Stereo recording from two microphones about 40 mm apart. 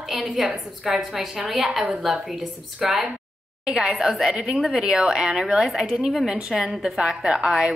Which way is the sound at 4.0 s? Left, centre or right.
Centre.